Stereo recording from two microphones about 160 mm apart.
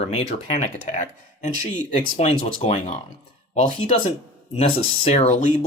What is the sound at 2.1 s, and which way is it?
Speech, 45° left (ahead or behind).